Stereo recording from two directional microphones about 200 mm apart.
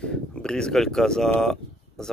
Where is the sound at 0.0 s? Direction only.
5° left (ahead or behind).